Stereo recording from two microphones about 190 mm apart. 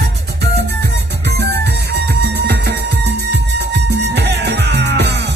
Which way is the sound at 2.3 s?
65° right (ahead or behind).